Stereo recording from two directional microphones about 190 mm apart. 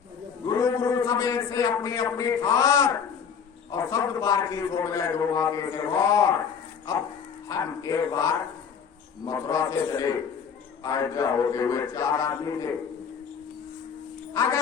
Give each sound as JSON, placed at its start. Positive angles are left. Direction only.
{"t": 0.4, "sound": "a man's voice", "side_deg": 15}
{"t": 7.4, "sound": "a man's voice", "side_deg": 20}